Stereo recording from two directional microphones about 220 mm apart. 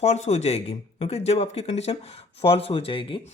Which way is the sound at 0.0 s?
30° left (ahead or behind).